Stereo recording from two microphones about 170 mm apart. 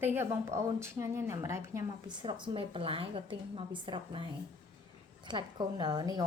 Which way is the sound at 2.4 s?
30° right (ahead or behind).